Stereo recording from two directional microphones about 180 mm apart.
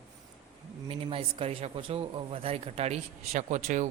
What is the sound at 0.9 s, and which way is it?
Speech, 30° right (ahead or behind).